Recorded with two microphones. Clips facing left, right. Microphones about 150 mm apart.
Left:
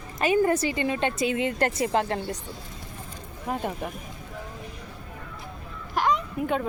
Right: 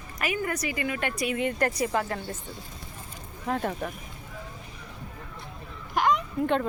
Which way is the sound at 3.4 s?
10° left (ahead or behind).